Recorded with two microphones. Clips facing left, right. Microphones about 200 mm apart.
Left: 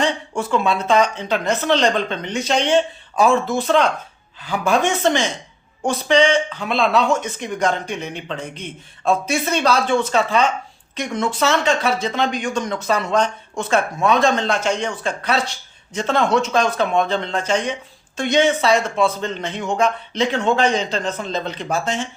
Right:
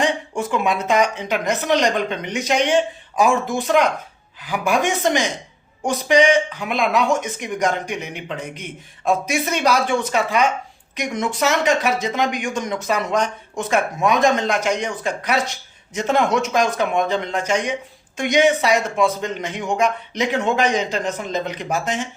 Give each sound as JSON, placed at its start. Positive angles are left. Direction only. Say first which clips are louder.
{"t": 0.0, "sound": "speech", "louder": "even", "side_deg": -15}